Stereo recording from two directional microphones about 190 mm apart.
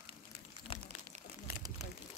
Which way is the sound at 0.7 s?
30° left (ahead or behind).